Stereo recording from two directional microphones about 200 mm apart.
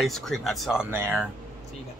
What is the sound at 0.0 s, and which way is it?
Speech, centre (ahead or behind).